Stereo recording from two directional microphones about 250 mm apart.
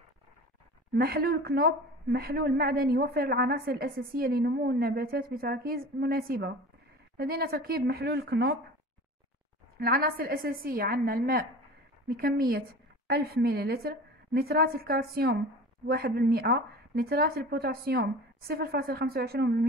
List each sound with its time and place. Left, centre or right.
0.9 s a woman's voice: right
9.8 s a woman's voice: right